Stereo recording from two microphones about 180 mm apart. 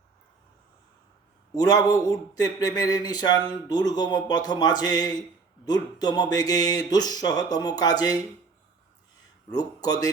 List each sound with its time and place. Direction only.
1.5 s speech: 20° left (ahead or behind)
9.5 s speech: 20° left (ahead or behind)